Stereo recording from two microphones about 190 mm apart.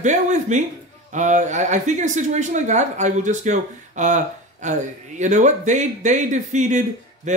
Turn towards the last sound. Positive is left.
turn(degrees=-40)  # may be behind; listen again after turning